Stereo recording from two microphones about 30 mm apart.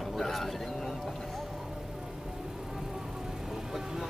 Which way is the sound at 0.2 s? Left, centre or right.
Centre.